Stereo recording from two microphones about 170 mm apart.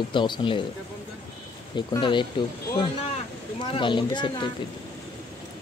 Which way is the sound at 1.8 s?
30° left (ahead or behind).